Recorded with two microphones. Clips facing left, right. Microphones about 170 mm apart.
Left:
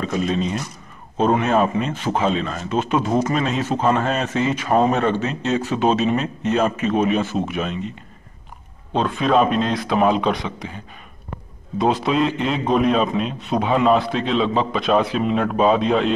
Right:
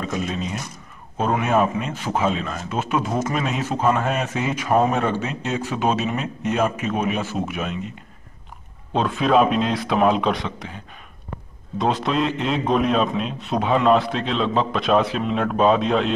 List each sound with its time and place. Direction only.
0.0 s a man's voice: 10° right (ahead or behind)
8.9 s a man's voice: centre (ahead or behind)
11.8 s a man's voice: 5° left (ahead or behind)